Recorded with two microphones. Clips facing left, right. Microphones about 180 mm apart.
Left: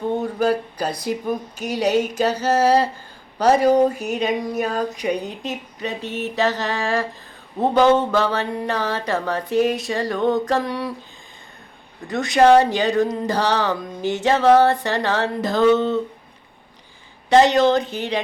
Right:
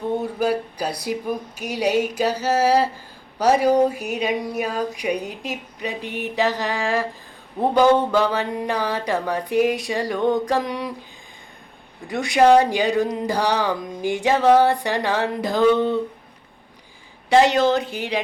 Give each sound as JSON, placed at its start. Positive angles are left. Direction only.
{"t": 0.2, "sound": "speech", "side_deg": -10}
{"t": 12.0, "sound": "speech", "side_deg": -10}
{"t": 17.2, "sound": "speech", "side_deg": -10}